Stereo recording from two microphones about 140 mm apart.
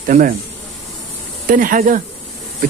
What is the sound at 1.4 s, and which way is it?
Speech, 80° right.